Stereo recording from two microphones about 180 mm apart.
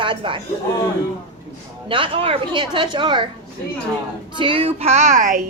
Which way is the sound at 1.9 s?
30° right (ahead or behind).